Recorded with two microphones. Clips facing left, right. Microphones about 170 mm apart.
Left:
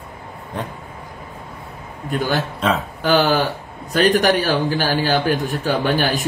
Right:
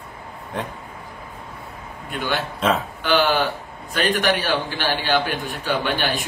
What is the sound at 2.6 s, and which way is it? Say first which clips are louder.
Speech: even; centre (ahead or behind).